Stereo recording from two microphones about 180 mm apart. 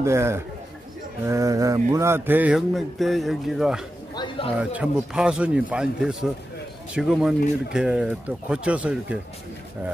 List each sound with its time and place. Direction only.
0.0 s mantra: 15° right (ahead or behind)
4.1 s speech: 25° left (ahead or behind)
4.6 s speech: 5° right (ahead or behind)